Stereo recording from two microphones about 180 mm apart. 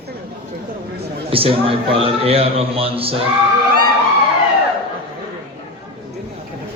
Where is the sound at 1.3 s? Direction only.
30° right (ahead or behind).